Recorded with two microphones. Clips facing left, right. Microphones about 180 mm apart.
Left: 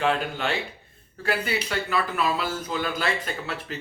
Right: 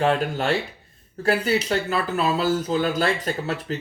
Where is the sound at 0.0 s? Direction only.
40° right (ahead or behind).